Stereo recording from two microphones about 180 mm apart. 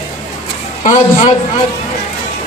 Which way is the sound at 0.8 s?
40° left (ahead or behind).